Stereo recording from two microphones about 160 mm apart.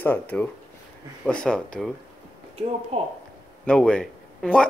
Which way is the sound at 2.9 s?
40° right (ahead or behind).